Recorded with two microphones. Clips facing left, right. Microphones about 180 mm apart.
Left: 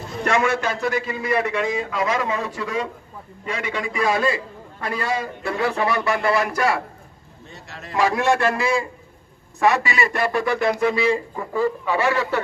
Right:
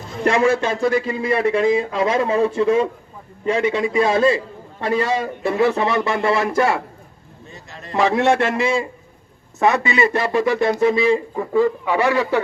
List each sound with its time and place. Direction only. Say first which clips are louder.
0.3 s speech: right 4 dB; 30° right (ahead or behind)
7.5 s speech: even; centre (ahead or behind)
7.9 s speech: right 3 dB; 20° right (ahead or behind)